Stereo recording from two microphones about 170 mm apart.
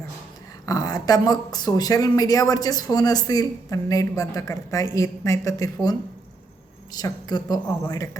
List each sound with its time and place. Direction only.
0.6 s speech: 20° left (ahead or behind)